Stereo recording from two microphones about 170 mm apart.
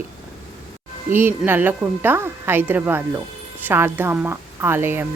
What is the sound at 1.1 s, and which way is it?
Speech, 10° right (ahead or behind).